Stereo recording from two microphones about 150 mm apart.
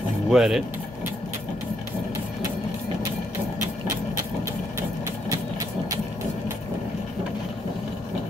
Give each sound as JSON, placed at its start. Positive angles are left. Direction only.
{"t": 0.3, "sound": "speech", "side_deg": -5}